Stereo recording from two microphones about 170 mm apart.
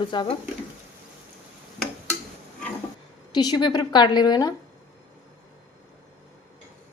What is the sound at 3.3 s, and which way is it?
A woman's voice, 25° left (ahead or behind).